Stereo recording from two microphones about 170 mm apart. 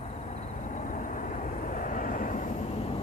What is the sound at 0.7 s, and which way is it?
Vehicle, 50° left (ahead or behind).